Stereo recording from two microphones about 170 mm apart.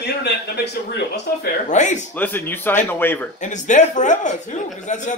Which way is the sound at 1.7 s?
45° left (ahead or behind).